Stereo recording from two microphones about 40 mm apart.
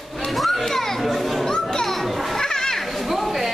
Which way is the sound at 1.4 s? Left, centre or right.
Centre.